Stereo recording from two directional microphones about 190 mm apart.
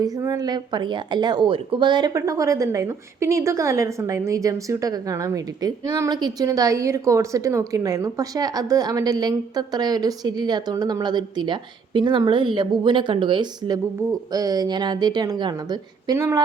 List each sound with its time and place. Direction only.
0.0 s a woman's voice: 20° right (ahead or behind)